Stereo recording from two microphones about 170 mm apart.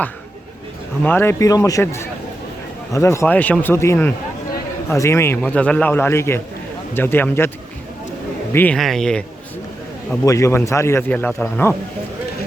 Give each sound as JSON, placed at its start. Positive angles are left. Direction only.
{"t": 1.0, "sound": "a man's voice", "side_deg": 10}
{"t": 8.5, "sound": "speech", "side_deg": 5}
{"t": 10.2, "sound": "a man's voice", "side_deg": 15}